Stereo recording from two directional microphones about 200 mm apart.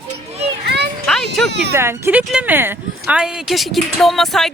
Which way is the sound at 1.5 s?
60° right (ahead or behind).